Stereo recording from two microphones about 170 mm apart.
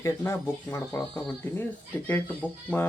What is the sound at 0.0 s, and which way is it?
Speech, 15° left (ahead or behind).